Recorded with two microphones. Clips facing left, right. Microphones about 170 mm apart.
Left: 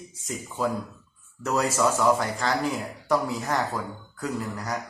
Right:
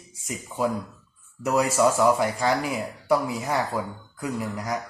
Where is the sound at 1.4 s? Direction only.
10° right (ahead or behind).